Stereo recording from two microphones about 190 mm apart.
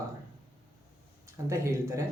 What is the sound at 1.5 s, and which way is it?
Speech, 15° right (ahead or behind).